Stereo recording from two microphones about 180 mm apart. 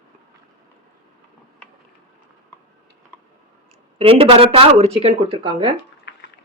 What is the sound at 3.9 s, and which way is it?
Speech, 30° right (ahead or behind).